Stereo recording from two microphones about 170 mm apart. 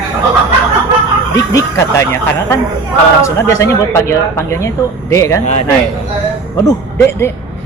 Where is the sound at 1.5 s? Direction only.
15° left (ahead or behind).